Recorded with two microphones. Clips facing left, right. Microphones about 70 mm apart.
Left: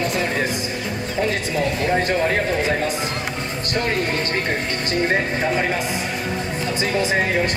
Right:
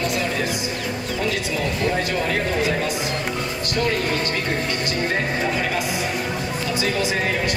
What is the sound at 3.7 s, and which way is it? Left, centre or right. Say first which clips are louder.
Speech: even; left.